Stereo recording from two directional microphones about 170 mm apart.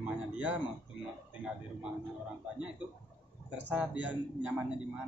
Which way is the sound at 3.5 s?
10° right (ahead or behind).